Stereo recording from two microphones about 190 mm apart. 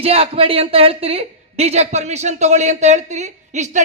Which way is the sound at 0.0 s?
30° right (ahead or behind).